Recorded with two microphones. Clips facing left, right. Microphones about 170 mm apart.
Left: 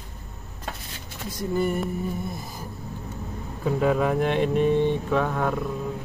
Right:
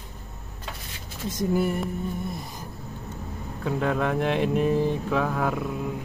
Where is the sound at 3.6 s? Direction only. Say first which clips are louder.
Left 3 dB; 5° left (ahead or behind).